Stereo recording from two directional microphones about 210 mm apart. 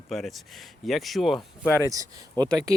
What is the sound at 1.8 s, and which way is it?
Speech, 15° right (ahead or behind).